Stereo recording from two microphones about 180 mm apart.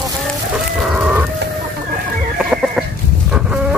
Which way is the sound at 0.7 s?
5° right (ahead or behind).